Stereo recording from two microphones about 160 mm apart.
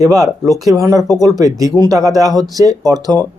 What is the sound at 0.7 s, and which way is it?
Speech, 20° right (ahead or behind).